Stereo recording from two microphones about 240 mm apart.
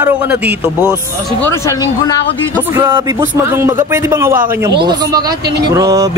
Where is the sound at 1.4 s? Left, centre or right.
Centre.